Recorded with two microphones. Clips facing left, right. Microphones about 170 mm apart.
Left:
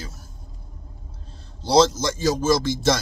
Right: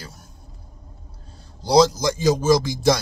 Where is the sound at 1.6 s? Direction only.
15° right (ahead or behind).